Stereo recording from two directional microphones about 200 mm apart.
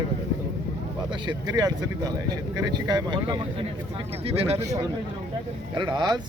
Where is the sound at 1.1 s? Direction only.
25° right (ahead or behind).